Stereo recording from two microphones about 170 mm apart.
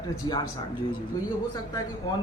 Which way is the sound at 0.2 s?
25° left (ahead or behind).